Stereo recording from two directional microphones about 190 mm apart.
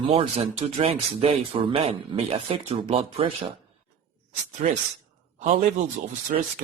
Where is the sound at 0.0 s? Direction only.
30° right (ahead or behind).